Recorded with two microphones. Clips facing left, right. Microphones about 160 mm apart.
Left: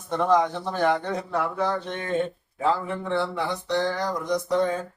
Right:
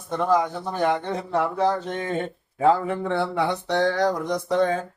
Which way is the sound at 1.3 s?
30° right (ahead or behind).